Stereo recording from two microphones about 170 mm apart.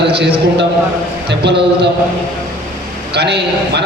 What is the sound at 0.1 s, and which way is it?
Speech, 85° right.